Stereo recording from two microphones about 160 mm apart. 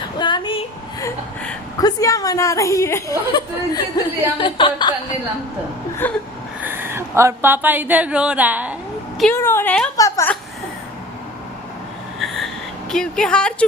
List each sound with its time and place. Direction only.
0.2 s a sound: 30° left (ahead or behind)
1.8 s a woman's voice: 20° left (ahead or behind)
6.0 s speech: 10° left (ahead or behind)
6.6 s speech: 15° right (ahead or behind)
9.3 s speech: 15° left (ahead or behind)
12.2 s a sound: centre (ahead or behind)
12.9 s speech: 5° left (ahead or behind)